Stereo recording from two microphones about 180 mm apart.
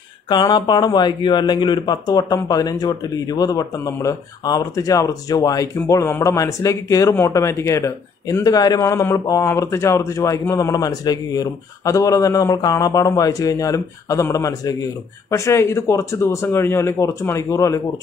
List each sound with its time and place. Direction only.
0.3 s speech: 25° left (ahead or behind)